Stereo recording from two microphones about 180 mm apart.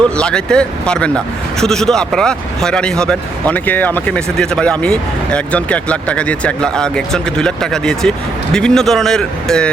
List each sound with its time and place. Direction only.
0.2 s a man's voice: 5° left (ahead or behind)